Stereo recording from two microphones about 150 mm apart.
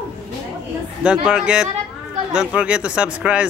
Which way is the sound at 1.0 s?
5° right (ahead or behind).